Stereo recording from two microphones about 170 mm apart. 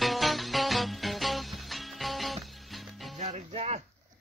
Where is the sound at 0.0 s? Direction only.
Centre (ahead or behind).